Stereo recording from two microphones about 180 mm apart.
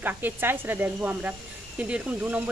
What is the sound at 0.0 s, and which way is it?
Speech, 10° right (ahead or behind).